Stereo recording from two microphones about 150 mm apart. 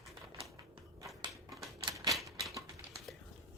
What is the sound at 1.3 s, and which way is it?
Typewriter, centre (ahead or behind).